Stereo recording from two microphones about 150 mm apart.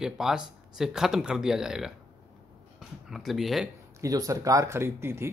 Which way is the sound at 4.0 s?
25° right (ahead or behind).